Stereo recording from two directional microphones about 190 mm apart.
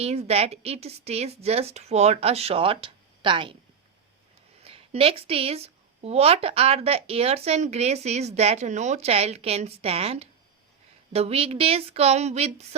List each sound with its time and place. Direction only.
0.0 s a woman's voice: 35° right (ahead or behind)
4.6 s a woman's voice: 30° right (ahead or behind)